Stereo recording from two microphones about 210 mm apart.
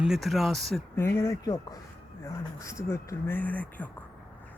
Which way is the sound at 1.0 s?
10° left (ahead or behind).